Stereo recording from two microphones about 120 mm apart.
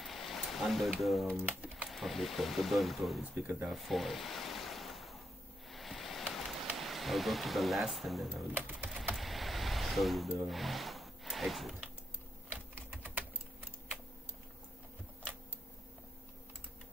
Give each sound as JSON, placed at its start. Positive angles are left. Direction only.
{"t": 0.0, "sound": "a sound", "side_deg": 0}
{"t": 0.9, "sound": "speech", "side_deg": 0}
{"t": 1.3, "sound": "speech", "side_deg": -15}
{"t": 1.9, "sound": "speech", "side_deg": 0}
{"t": 3.6, "sound": "a sound", "side_deg": 0}
{"t": 8.5, "sound": "pigeon", "side_deg": -15}
{"t": 9.1, "sound": "vehicle", "side_deg": 0}
{"t": 10.4, "sound": "speech", "side_deg": 0}
{"t": 12.9, "sound": "typing", "side_deg": -10}